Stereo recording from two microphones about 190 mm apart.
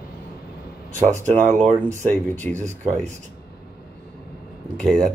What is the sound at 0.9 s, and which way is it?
Speech, 40° right (ahead or behind).